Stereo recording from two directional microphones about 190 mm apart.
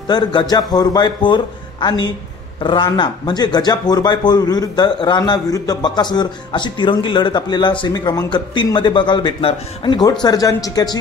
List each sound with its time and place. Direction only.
0.1 s speech: 25° left (ahead or behind)